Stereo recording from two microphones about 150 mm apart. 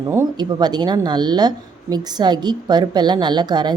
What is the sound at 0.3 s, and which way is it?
A woman's voice, 30° right (ahead or behind).